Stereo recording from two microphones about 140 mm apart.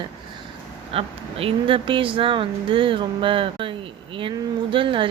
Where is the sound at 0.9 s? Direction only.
40° right (ahead or behind).